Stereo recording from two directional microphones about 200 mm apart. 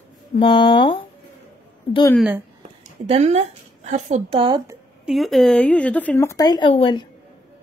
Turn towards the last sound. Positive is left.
turn(degrees=25)  # may be behind; listen again after turning